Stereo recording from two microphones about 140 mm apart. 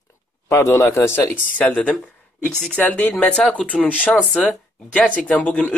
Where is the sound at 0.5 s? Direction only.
20° left (ahead or behind).